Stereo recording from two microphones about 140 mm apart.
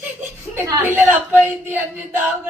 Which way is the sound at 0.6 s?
15° right (ahead or behind).